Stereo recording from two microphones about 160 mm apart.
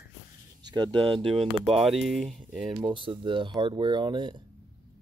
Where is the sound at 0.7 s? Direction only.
30° right (ahead or behind).